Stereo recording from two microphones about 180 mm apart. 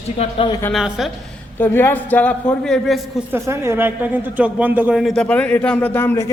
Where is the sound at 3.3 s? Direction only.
15° right (ahead or behind).